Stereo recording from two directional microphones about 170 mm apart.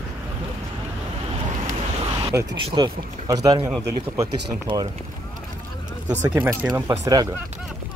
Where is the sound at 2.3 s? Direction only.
15° right (ahead or behind).